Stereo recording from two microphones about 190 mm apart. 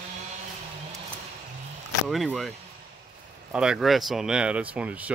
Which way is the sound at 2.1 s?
Centre (ahead or behind).